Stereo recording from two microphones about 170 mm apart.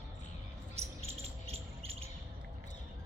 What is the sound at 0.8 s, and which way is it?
Cricket, 35° right (ahead or behind).